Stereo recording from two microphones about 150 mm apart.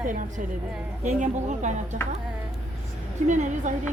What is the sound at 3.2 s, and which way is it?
Speech, 55° right (ahead or behind).